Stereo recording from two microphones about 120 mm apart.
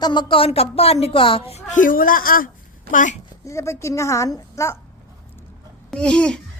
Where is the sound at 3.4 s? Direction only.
25° left (ahead or behind).